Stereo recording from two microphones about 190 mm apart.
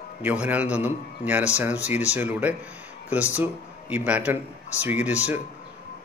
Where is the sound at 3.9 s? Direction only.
10° right (ahead or behind).